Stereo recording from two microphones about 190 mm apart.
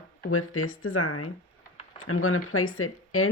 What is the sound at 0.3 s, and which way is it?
Speech, 90° left.